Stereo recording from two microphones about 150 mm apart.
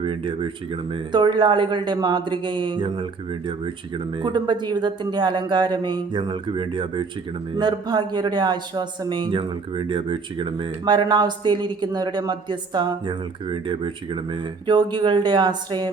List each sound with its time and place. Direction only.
0.0 s speech: 35° right (ahead or behind)